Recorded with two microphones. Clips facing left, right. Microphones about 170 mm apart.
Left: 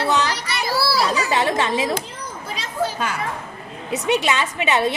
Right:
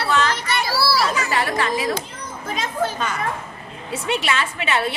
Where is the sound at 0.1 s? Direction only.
15° left (ahead or behind).